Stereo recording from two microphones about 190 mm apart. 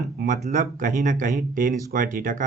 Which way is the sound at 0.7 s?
40° right (ahead or behind).